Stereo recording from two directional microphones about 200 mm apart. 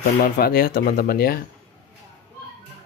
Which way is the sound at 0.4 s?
50° left (ahead or behind).